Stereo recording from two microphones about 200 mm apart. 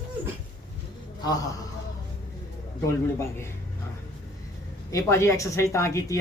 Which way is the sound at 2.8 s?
15° left (ahead or behind).